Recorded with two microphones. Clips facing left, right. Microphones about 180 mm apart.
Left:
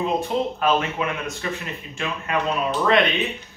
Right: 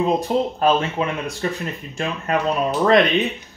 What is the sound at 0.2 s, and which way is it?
Speech, 35° right (ahead or behind).